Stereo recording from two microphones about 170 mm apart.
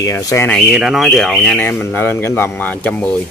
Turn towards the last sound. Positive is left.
turn(degrees=10)  # may be behind; listen again after turning